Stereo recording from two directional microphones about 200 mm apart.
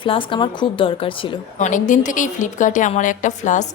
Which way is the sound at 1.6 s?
40° left (ahead or behind).